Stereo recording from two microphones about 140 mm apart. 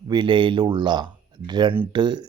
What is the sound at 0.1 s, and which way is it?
Speech, 35° right (ahead or behind).